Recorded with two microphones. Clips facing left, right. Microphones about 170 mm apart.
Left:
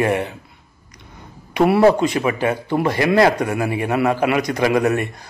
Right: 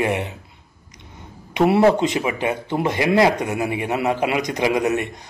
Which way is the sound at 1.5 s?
20° right (ahead or behind).